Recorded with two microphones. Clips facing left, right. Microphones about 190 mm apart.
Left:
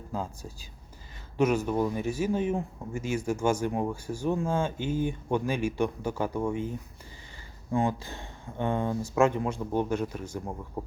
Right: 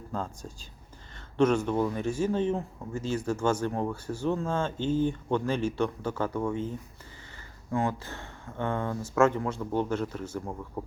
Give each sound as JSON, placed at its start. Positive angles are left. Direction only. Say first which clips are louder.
{"t": 0.1, "sound": "speech", "louder": "even", "side_deg": 10}